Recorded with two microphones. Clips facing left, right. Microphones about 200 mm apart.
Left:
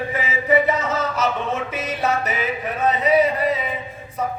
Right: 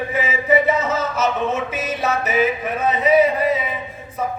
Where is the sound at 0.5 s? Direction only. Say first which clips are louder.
Right 1 dB; centre (ahead or behind).